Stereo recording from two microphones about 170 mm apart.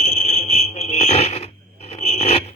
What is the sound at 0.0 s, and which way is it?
Fire alarm, 40° left (ahead or behind).